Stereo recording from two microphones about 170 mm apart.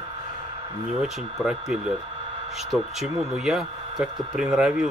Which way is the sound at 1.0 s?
5° right (ahead or behind).